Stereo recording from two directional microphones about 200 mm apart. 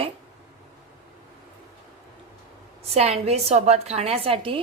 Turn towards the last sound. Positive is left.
turn(degrees=-30)  # may be behind; listen again after turning